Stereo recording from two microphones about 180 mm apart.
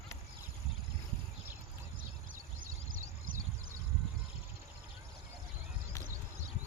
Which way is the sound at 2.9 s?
50° right (ahead or behind).